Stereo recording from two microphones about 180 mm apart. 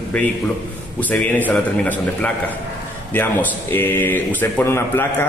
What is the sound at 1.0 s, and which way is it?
Speech, 10° left (ahead or behind).